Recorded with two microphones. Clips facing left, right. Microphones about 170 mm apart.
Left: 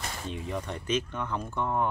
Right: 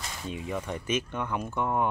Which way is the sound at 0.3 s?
5° right (ahead or behind).